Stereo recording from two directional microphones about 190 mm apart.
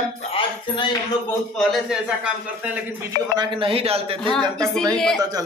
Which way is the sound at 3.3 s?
30° right (ahead or behind).